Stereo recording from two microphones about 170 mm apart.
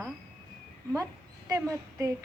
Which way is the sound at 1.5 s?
20° right (ahead or behind).